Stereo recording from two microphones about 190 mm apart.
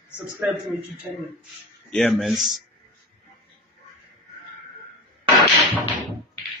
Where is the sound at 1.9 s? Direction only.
5° left (ahead or behind).